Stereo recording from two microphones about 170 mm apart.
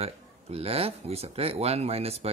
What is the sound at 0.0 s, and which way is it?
Speech, 35° right (ahead or behind).